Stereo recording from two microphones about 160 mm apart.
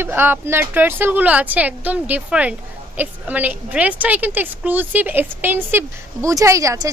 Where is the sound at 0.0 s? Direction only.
15° right (ahead or behind).